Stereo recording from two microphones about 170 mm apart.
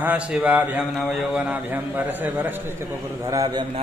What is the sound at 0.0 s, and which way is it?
A man's voice, 5° right (ahead or behind).